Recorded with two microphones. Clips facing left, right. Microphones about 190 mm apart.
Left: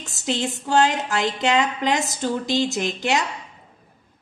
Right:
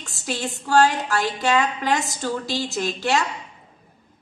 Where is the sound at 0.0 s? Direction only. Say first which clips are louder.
Left 3 dB; 20° left (ahead or behind).